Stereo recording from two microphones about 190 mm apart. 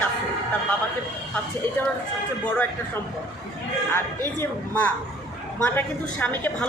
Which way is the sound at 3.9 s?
10° left (ahead or behind).